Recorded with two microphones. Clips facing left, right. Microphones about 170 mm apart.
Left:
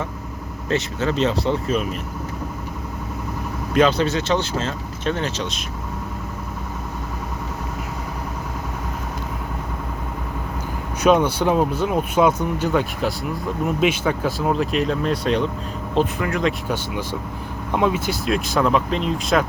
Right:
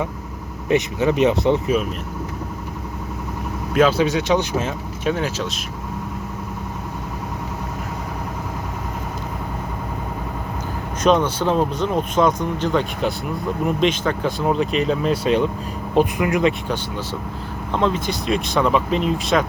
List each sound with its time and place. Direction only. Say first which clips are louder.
0.7 s speech: right 4 dB; 15° right (ahead or behind)
3.8 s speech: right 1 dB; 5° right (ahead or behind)
11.0 s speech: left 1 dB; 10° left (ahead or behind); by 16.5 s 15° right (ahead or behind)
16.5 s speech: right 1 dB; 10° left (ahead or behind)